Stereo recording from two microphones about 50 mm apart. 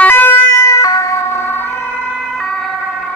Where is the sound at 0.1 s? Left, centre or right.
Left.